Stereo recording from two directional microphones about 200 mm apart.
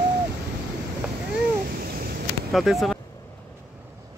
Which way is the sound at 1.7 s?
50° right (ahead or behind).